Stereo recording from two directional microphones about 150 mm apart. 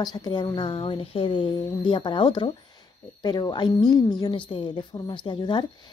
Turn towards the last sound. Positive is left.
turn(degrees=30)  # may be behind; listen again after turning